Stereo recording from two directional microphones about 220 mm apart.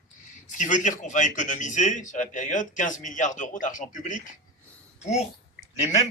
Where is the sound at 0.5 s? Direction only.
35° left (ahead or behind).